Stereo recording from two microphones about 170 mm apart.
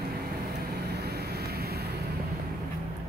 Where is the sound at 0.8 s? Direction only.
70° right (ahead or behind).